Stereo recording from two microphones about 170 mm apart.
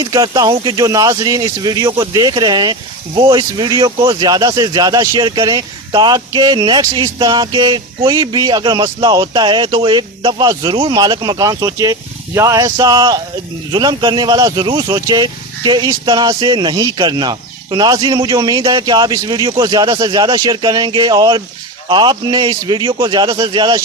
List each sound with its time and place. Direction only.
0.0 s speech: 25° right (ahead or behind)